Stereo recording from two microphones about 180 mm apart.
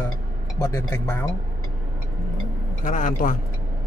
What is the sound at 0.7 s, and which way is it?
Speech, 10° left (ahead or behind).